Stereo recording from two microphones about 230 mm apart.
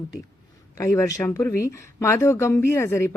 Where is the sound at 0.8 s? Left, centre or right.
Centre.